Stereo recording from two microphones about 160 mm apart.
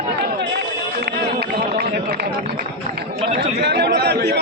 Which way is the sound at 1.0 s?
80° right.